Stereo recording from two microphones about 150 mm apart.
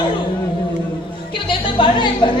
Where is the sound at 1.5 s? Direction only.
35° left (ahead or behind).